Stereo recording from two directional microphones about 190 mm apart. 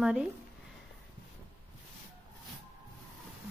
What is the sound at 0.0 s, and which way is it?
Speech, 5° right (ahead or behind).